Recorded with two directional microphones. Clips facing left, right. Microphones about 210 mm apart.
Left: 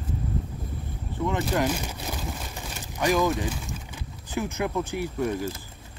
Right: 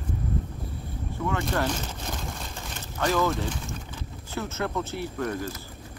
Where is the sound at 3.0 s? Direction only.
15° left (ahead or behind).